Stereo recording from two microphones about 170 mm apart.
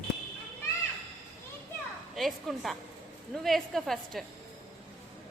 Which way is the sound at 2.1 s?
Centre (ahead or behind).